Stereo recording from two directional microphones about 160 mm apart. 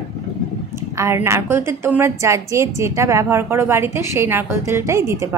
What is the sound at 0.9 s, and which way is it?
A woman's voice, 15° right (ahead or behind).